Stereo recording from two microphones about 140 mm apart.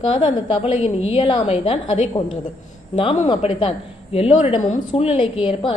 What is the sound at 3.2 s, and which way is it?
A woman's voice, 40° left (ahead or behind).